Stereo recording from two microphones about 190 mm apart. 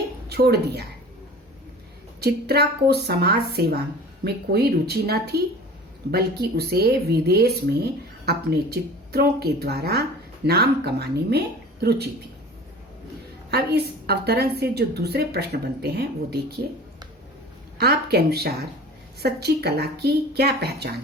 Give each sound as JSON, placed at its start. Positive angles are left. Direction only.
{"t": 0.3, "sound": "speech", "side_deg": -60}
{"t": 2.2, "sound": "speech", "side_deg": -55}
{"t": 13.5, "sound": "speech", "side_deg": -55}
{"t": 17.7, "sound": "speech", "side_deg": -55}